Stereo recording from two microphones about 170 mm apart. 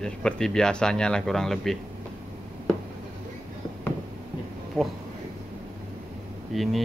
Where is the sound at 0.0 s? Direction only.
5° left (ahead or behind).